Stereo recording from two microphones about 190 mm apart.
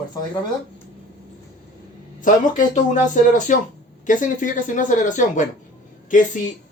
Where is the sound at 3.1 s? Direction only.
40° left (ahead or behind).